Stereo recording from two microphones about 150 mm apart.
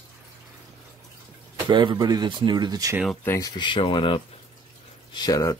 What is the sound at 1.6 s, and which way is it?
Speech, 30° right (ahead or behind).